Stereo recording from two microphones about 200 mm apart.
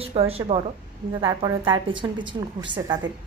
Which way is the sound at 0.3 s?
30° right (ahead or behind).